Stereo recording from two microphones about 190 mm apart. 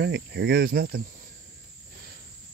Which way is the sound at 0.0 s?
60° right (ahead or behind).